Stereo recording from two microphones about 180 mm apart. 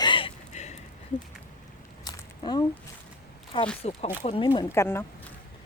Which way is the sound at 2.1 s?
25° left (ahead or behind).